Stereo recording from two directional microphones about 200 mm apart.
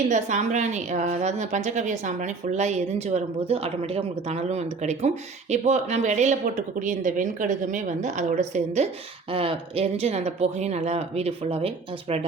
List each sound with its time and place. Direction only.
0.1 s a woman's voice: 40° right (ahead or behind)